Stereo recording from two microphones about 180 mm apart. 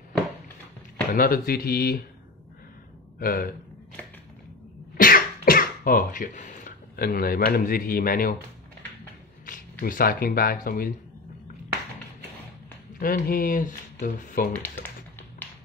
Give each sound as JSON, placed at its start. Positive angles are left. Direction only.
{"t": 1.1, "sound": "speech", "side_deg": 55}
{"t": 3.2, "sound": "speech", "side_deg": 55}
{"t": 5.0, "sound": "speech", "side_deg": 50}
{"t": 9.5, "sound": "speech", "side_deg": 50}
{"t": 13.0, "sound": "speech", "side_deg": 50}
{"t": 14.5, "sound": "speech", "side_deg": 10}